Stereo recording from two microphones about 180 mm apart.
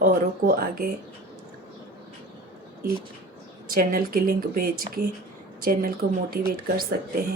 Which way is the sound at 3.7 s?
55° right (ahead or behind).